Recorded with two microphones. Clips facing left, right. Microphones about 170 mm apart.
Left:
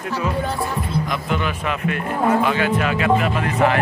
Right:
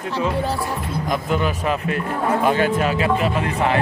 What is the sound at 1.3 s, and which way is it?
Speech, 35° right (ahead or behind).